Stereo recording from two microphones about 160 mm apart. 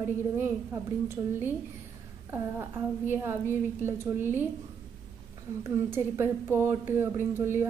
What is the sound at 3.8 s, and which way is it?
Speech, 15° right (ahead or behind).